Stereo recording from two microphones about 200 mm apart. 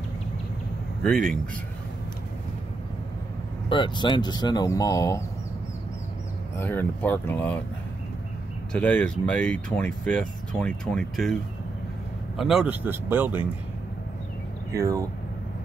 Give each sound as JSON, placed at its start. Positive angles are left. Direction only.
{"t": 1.0, "sound": "speech", "side_deg": 5}
{"t": 3.6, "sound": "speech", "side_deg": 25}
{"t": 6.6, "sound": "speech", "side_deg": 10}
{"t": 8.7, "sound": "speech", "side_deg": 5}
{"t": 12.4, "sound": "speech", "side_deg": 0}
{"t": 14.7, "sound": "speech", "side_deg": -15}